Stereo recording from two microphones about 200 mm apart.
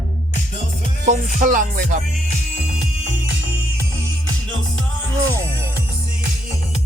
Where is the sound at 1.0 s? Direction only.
40° right (ahead or behind).